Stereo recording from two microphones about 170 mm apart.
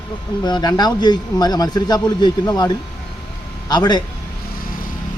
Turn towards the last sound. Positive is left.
turn(degrees=25)  # may be behind; listen again after turning